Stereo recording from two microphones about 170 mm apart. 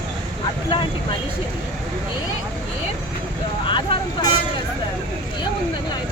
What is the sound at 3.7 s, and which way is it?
Vehicle, 30° left (ahead or behind).